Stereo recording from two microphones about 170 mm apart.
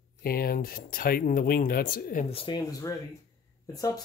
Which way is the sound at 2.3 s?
30° left (ahead or behind).